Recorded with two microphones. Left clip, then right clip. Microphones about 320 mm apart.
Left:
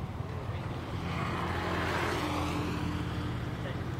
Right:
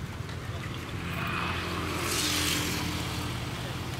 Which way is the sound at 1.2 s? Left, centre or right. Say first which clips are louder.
Right 3 dB; left.